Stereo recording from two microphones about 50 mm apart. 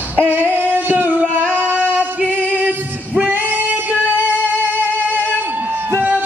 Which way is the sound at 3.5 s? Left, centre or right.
Right.